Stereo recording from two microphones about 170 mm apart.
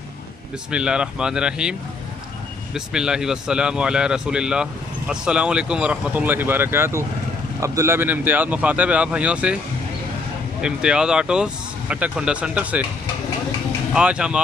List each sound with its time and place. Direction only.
0.7 s speech: 5° right (ahead or behind)
10.6 s speech: 5° right (ahead or behind)
13.9 s speech: 5° right (ahead or behind)